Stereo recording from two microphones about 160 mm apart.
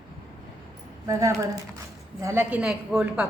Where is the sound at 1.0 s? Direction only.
20° right (ahead or behind).